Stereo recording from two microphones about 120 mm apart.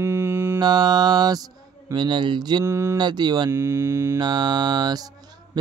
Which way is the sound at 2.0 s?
40° right (ahead or behind).